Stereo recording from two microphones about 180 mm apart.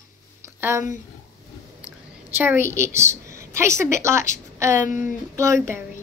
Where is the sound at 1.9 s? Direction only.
10° right (ahead or behind).